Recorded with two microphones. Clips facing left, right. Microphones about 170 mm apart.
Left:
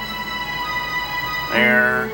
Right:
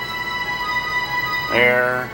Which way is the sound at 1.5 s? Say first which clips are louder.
Right 1 dB; 5° right (ahead or behind).